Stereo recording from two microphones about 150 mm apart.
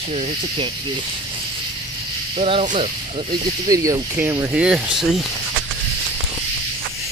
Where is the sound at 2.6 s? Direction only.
55° right (ahead or behind).